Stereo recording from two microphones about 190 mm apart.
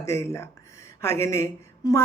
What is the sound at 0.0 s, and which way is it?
A woman's voice, 15° left (ahead or behind).